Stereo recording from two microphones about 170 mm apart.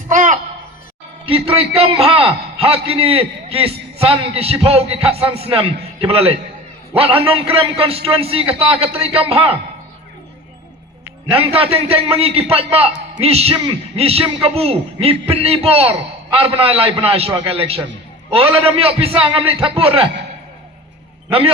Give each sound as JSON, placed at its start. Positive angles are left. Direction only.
{"t": 0.1, "sound": "a sound", "side_deg": -50}
{"t": 1.2, "sound": "a man's voice", "side_deg": -35}
{"t": 11.3, "sound": "a man's voice", "side_deg": -35}